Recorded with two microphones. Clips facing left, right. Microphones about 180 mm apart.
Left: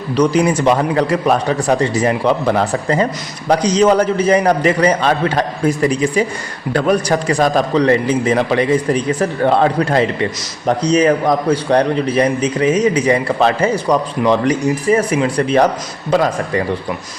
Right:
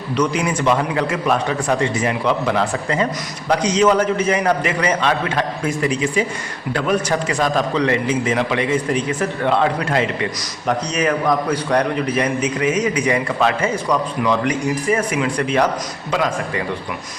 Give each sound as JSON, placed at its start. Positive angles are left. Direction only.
{"t": 0.2, "sound": "a man's voice", "side_deg": 35}